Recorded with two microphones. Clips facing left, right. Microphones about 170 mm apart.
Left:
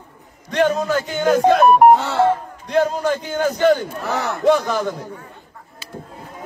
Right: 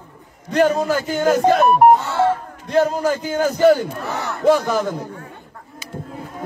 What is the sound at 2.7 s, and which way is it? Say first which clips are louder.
A man's voice: right 1 dB; 5° right (ahead or behind).